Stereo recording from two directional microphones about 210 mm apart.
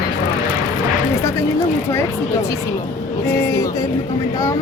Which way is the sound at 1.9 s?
15° left (ahead or behind).